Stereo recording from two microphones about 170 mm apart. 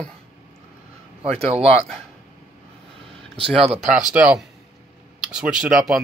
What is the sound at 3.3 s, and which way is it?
Speech, 35° right (ahead or behind).